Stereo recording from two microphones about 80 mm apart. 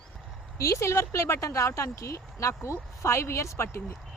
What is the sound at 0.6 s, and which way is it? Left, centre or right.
Speech, left.